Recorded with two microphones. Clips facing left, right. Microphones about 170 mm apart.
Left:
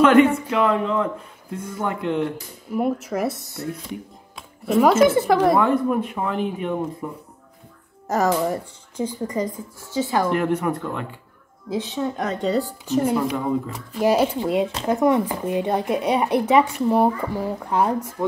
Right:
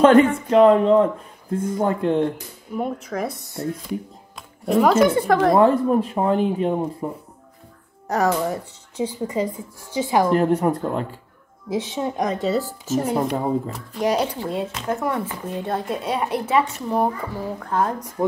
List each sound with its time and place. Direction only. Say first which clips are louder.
0.0 s speech: right 1 dB; 30° right (ahead or behind)
2.7 s speech: left 3 dB; 5° left (ahead or behind)
5.5 s speech: right 3 dB; 30° right (ahead or behind)
8.1 s speech: even; centre (ahead or behind)
9.0 s speech: right 1 dB; 10° right (ahead or behind)
10.3 s speech: right 3 dB; 35° right (ahead or behind)
11.7 s speech: right 1 dB; 15° right (ahead or behind); by 14.3 s 5° left (ahead or behind)
14.3 s speech: left 5 dB; 15° left (ahead or behind)